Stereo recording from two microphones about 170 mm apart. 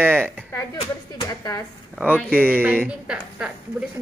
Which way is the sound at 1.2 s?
20° left (ahead or behind).